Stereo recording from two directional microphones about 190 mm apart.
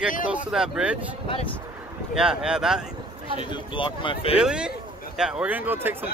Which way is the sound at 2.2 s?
5° right (ahead or behind).